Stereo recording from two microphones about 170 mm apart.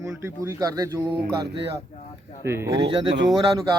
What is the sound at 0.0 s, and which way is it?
Speech, 15° right (ahead or behind).